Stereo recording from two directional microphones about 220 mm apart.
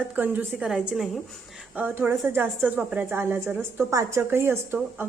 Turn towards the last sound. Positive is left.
turn(degrees=-10)  # may be behind; listen again after turning